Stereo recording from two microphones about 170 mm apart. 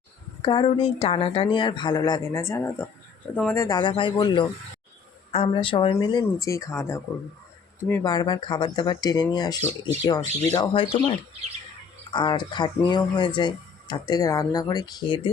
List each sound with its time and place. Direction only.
0.4 s speech: 30° left (ahead or behind); by 3.8 s 15° left (ahead or behind)
3.8 s speech: 30° left (ahead or behind)
8.0 s speech: 25° left (ahead or behind)
12.1 s speech: 30° left (ahead or behind)